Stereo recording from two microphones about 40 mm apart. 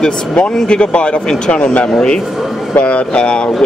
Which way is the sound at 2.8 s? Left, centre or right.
Left.